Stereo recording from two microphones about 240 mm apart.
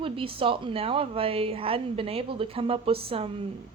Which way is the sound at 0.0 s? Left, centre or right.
Right.